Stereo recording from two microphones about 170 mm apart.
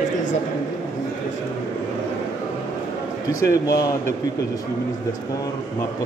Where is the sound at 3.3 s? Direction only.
20° left (ahead or behind).